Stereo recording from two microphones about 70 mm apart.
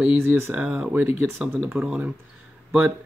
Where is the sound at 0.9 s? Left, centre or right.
Right.